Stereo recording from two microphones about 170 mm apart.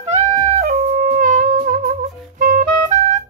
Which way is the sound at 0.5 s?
40° right (ahead or behind).